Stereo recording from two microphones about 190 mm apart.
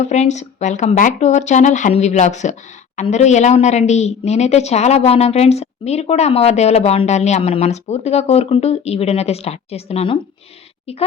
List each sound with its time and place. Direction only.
0.0 s speech: 35° left (ahead or behind)